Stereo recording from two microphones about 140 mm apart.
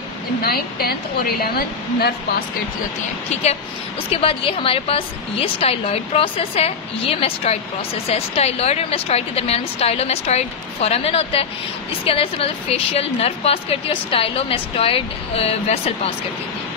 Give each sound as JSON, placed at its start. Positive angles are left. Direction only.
{"t": 0.5, "sound": "speech", "side_deg": 90}
{"t": 4.1, "sound": "a woman's voice", "side_deg": 40}